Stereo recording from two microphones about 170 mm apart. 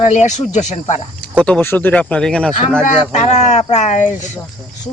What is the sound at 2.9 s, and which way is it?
Speech, 40° left (ahead or behind).